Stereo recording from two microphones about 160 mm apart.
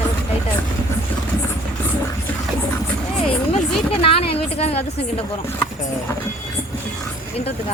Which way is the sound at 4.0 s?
35° left (ahead or behind).